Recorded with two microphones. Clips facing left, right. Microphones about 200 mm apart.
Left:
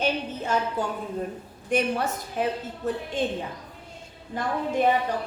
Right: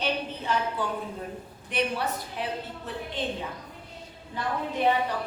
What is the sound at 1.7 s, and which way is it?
A woman's voice, 45° left (ahead or behind).